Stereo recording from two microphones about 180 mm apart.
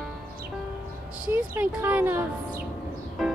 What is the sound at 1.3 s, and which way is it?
Speech, 10° right (ahead or behind).